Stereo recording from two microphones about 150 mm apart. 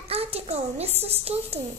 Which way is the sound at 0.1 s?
40° right (ahead or behind).